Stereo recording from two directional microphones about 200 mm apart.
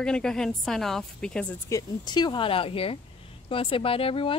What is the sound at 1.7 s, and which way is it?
Speech, 20° left (ahead or behind).